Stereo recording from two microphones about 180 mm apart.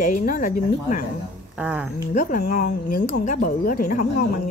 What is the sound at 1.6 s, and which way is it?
Speech, 5° right (ahead or behind).